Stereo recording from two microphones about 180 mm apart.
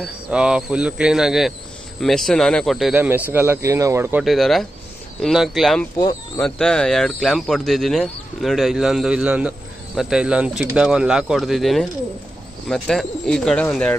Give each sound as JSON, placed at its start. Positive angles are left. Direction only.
{"t": 0.0, "sound": "speech", "side_deg": -5}
{"t": 4.2, "sound": "speech", "side_deg": 0}
{"t": 5.9, "sound": "speech", "side_deg": 20}
{"t": 6.4, "sound": "speech", "side_deg": 5}